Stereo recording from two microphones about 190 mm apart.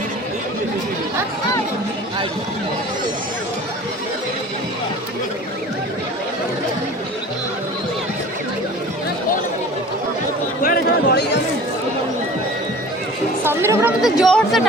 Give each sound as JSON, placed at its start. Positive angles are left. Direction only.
{"t": 10.6, "sound": "a sound", "side_deg": 50}
{"t": 13.4, "sound": "chatter", "side_deg": -10}
{"t": 14.0, "sound": "speech", "side_deg": 0}